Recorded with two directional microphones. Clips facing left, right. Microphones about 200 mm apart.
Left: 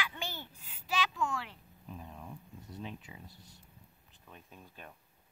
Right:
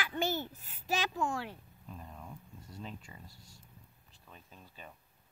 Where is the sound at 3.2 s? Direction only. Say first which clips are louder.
Left 2 dB; 20° left (ahead or behind).